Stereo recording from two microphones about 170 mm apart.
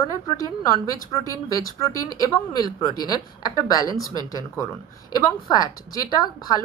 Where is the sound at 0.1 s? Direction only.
20° left (ahead or behind).